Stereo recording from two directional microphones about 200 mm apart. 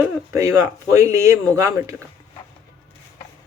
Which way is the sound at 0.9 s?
15° right (ahead or behind).